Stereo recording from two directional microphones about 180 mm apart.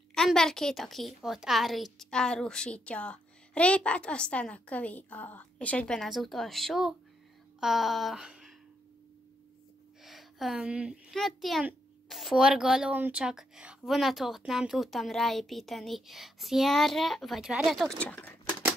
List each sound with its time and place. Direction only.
0.1 s a child's voice: 5° left (ahead or behind)
7.6 s a sound: centre (ahead or behind)
10.0 s a child's voice: centre (ahead or behind)